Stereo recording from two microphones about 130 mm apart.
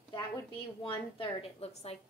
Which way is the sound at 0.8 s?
45° left (ahead or behind).